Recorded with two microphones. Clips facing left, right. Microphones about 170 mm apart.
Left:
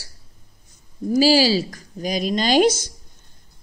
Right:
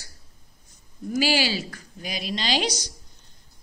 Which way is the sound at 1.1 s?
35° left (ahead or behind).